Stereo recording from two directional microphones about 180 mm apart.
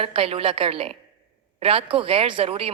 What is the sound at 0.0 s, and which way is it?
Speech, 30° right (ahead or behind).